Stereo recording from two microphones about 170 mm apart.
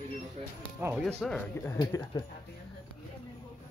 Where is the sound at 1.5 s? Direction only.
15° left (ahead or behind).